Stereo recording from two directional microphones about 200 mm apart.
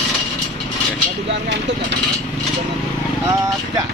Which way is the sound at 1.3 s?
60° right (ahead or behind).